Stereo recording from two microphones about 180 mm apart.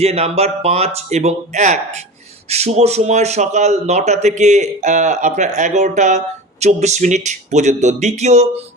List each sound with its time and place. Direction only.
0.0 s speech: 35° right (ahead or behind)